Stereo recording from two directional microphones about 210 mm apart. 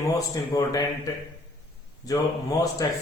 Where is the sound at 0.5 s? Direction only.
15° left (ahead or behind).